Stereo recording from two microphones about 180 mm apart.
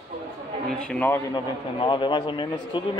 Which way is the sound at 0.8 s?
5° left (ahead or behind).